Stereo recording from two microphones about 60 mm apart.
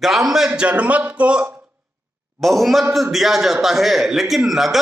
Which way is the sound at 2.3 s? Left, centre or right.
Centre.